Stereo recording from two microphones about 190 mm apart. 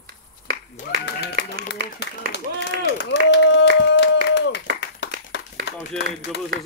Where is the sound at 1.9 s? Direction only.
65° left (ahead or behind).